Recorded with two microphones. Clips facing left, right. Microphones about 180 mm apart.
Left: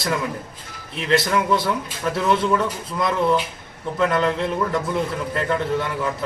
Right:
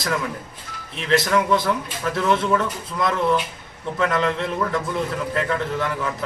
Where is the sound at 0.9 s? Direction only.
Centre (ahead or behind).